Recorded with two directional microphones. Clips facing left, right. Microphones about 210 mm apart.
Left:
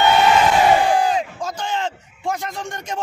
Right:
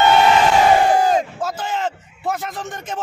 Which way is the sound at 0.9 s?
45° right (ahead or behind).